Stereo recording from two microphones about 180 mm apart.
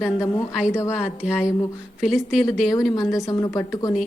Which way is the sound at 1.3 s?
15° left (ahead or behind).